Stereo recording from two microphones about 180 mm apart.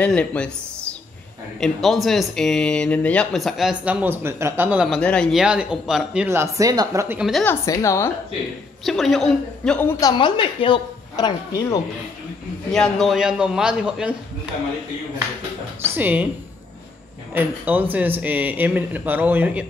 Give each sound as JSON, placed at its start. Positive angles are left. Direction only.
{"t": 0.0, "sound": "speech", "side_deg": 5}
{"t": 7.2, "sound": "speech", "side_deg": 0}
{"t": 7.4, "sound": "a woman's voice", "side_deg": 20}
{"t": 8.8, "sound": "speech", "side_deg": 0}
{"t": 9.9, "sound": "a woman's voice", "side_deg": 25}
{"t": 12.7, "sound": "speech", "side_deg": 0}
{"t": 15.8, "sound": "speech", "side_deg": -10}
{"t": 17.3, "sound": "speech", "side_deg": -10}